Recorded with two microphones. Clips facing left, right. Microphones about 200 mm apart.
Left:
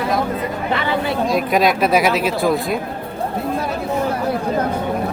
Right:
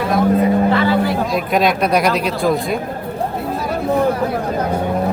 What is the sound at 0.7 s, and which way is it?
Vehicle, 20° left (ahead or behind).